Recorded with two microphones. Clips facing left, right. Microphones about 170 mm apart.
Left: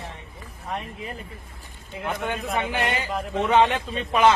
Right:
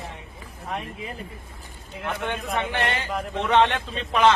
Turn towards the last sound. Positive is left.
turn(degrees=5)  # may be behind; listen again after turning